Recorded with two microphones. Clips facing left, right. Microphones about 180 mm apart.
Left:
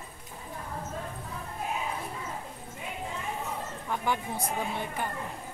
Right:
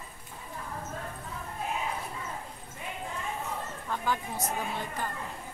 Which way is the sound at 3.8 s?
15° left (ahead or behind).